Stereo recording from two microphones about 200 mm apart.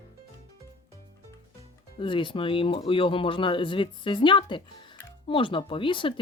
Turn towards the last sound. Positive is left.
turn(degrees=25)  # may be behind; listen again after turning